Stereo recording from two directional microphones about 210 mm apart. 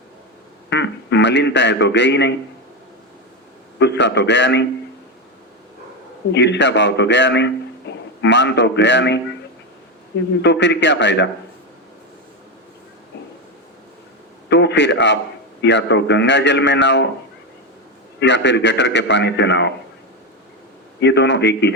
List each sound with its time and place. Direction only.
0.7 s a man's voice: 55° left (ahead or behind)
3.8 s a man's voice: 55° left (ahead or behind)
6.3 s a man's voice: 55° left (ahead or behind)
10.4 s a man's voice: 55° left (ahead or behind)
14.5 s a man's voice: 55° left (ahead or behind)
18.2 s a man's voice: 55° left (ahead or behind)
21.0 s a man's voice: 55° left (ahead or behind)